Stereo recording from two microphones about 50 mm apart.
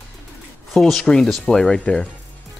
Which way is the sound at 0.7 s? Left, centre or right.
Centre.